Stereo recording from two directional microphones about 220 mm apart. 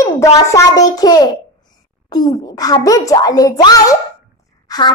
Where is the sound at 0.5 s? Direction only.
15° left (ahead or behind).